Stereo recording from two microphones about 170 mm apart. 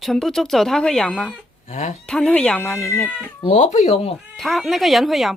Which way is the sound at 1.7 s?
45° left (ahead or behind).